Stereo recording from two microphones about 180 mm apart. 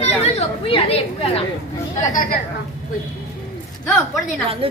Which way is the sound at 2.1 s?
50° left (ahead or behind).